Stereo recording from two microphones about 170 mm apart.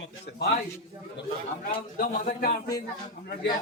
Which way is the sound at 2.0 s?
55° left (ahead or behind).